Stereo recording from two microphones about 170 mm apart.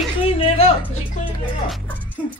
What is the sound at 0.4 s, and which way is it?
Music, 35° left (ahead or behind).